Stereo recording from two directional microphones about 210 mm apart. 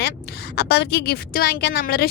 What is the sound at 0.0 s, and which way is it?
A woman's voice, 55° left (ahead or behind).